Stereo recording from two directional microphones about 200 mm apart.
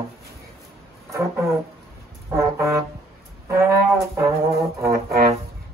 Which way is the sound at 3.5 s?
15° right (ahead or behind).